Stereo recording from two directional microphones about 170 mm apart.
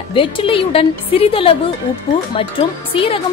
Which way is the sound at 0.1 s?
30° left (ahead or behind).